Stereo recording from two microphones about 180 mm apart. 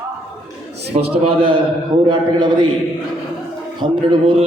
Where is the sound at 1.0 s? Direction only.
35° right (ahead or behind).